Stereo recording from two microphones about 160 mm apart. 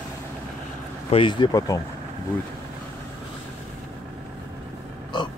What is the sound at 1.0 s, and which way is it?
Speech, 35° left (ahead or behind).